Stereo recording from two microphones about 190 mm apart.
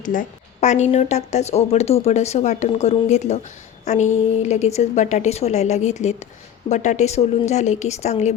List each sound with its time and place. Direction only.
0.0 s speech: 45° left (ahead or behind)